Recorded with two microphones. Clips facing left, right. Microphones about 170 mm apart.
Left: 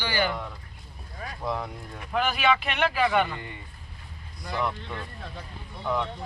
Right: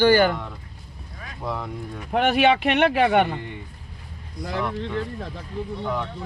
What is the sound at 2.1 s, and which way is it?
Speech, 65° right (ahead or behind).